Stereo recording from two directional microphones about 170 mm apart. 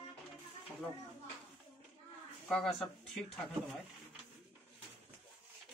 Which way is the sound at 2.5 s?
Centre (ahead or behind).